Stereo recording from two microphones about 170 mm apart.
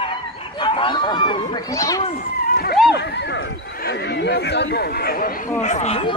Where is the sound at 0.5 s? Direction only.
25° left (ahead or behind).